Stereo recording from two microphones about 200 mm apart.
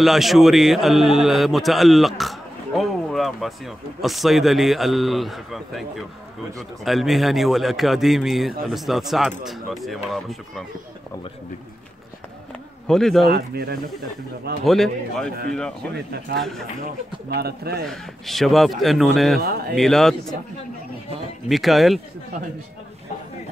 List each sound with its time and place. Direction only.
0.0 s a man's voice: centre (ahead or behind)
12.8 s a man's voice: centre (ahead or behind)
14.6 s a man's voice: centre (ahead or behind)
15.9 s speech: 55° right (ahead or behind)
16.3 s a man's voice: centre (ahead or behind)
16.8 s speech: 50° right (ahead or behind)
17.8 s a man's voice: centre (ahead or behind)
21.5 s a man's voice: centre (ahead or behind)